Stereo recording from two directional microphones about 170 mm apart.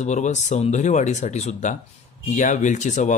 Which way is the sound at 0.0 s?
45° left (ahead or behind).